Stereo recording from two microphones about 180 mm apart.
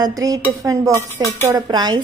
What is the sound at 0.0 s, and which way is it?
A woman's voice, 20° right (ahead or behind).